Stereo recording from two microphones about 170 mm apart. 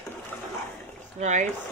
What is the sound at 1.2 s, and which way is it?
Speech, 45° right (ahead or behind).